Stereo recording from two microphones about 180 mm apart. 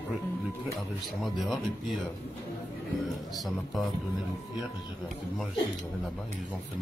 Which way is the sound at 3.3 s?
Centre (ahead or behind).